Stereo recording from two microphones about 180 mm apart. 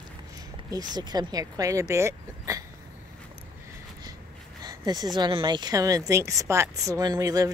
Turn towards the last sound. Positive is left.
turn(degrees=-20)  # may be behind; listen again after turning